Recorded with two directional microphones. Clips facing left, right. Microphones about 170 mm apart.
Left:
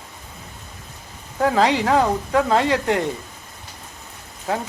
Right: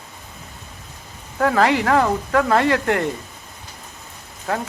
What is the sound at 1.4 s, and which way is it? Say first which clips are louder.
Speech: right 1 dB; 20° left (ahead or behind).